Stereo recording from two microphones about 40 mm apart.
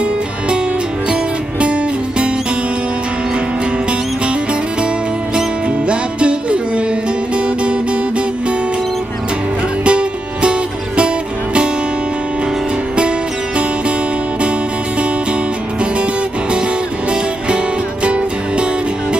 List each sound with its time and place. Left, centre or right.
5.9 s music: right
9.8 s music: right
18.0 s music: right